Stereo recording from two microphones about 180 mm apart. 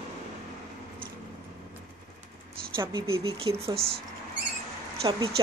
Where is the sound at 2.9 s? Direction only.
30° right (ahead or behind).